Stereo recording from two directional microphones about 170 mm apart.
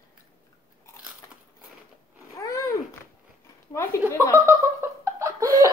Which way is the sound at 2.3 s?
20° left (ahead or behind).